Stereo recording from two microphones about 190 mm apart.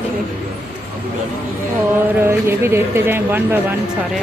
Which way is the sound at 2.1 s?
15° right (ahead or behind).